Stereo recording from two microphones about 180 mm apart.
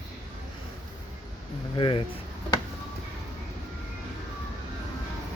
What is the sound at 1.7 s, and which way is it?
Speech, 30° left (ahead or behind).